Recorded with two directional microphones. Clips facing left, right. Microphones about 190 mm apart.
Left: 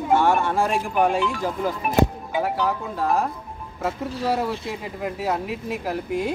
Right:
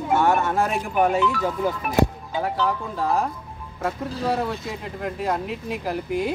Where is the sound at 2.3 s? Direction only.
5° left (ahead or behind).